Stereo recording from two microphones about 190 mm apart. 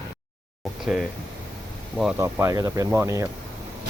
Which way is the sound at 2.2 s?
15° right (ahead or behind).